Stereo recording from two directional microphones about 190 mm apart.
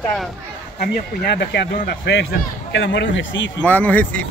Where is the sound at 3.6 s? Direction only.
10° left (ahead or behind).